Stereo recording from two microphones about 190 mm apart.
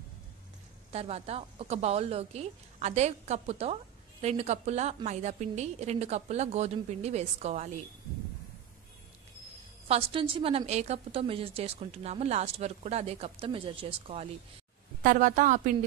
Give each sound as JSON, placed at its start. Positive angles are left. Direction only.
{"t": 0.9, "sound": "a woman's voice", "side_deg": -35}
{"t": 9.8, "sound": "a woman's voice", "side_deg": -30}
{"t": 15.0, "sound": "a woman's voice", "side_deg": -40}